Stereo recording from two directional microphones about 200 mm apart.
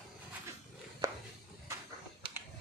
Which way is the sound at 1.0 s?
15° right (ahead or behind).